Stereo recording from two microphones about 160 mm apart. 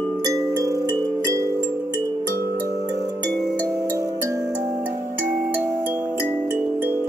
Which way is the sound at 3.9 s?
20° right (ahead or behind).